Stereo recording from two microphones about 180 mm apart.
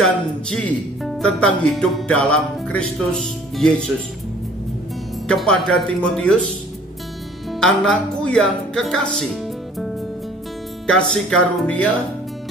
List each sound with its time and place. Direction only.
0.5 s speech: centre (ahead or behind)
5.3 s speech: 5° left (ahead or behind)
7.5 s speech: centre (ahead or behind)
9.1 s music: centre (ahead or behind)
10.9 s speech: 5° left (ahead or behind)